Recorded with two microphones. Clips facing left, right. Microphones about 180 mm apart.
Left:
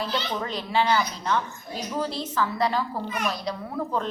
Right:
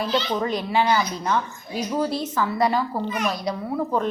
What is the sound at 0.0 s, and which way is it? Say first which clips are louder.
A woman's voice: right 5 dB; 10° right (ahead or behind).